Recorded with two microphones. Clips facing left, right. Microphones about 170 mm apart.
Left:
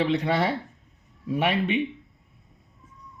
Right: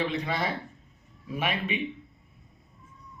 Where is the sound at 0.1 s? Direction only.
70° left (ahead or behind).